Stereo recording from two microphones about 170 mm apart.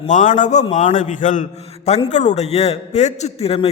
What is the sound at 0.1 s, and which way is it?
A man's voice, 50° left (ahead or behind).